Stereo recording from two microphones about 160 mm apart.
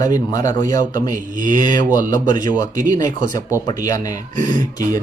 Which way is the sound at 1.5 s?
25° left (ahead or behind).